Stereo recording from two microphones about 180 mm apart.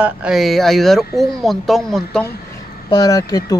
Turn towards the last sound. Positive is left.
turn(degrees=20)  # may be behind; listen again after turning